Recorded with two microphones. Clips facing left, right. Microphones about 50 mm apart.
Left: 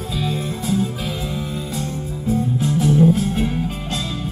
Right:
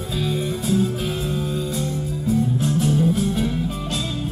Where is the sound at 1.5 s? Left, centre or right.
Left.